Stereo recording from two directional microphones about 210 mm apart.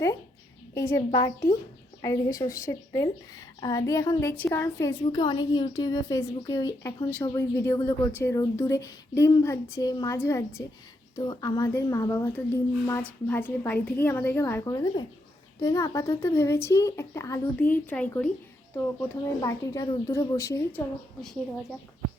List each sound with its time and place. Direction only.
0.7 s a woman's voice: 15° left (ahead or behind)
21.2 s a woman's voice: centre (ahead or behind)